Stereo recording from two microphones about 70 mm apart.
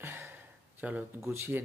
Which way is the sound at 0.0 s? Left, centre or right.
Right.